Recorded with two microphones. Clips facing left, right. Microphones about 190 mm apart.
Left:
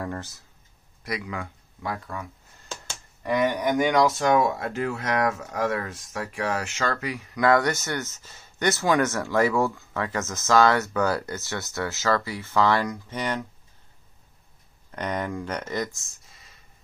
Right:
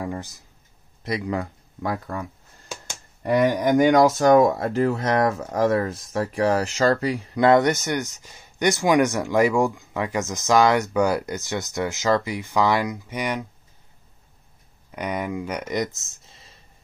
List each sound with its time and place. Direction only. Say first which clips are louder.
0.0 s speech: right 2 dB; 10° right (ahead or behind)
1.0 s speech: right 6 dB; 30° right (ahead or behind); by 13.5 s 10° right (ahead or behind)
14.9 s speech: right 2 dB; 10° right (ahead or behind); by 16.5 s 25° right (ahead or behind)